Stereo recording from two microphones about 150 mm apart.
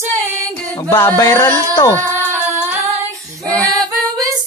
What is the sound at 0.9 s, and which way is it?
Singing, 15° left (ahead or behind).